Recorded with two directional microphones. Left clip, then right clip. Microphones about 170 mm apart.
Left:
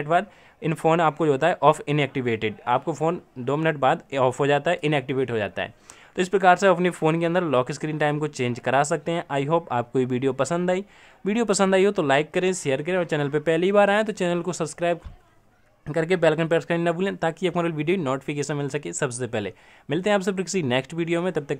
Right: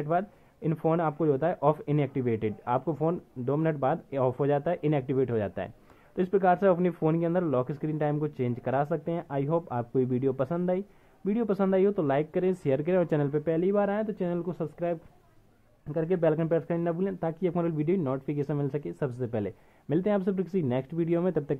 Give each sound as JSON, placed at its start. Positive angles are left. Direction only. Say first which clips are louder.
{"t": 0.0, "sound": "speech", "louder": "left 6 dB", "side_deg": 20}
{"t": 13.3, "sound": "speech", "louder": "left 6 dB", "side_deg": 25}
{"t": 17.2, "sound": "speech", "louder": "left 5 dB", "side_deg": 15}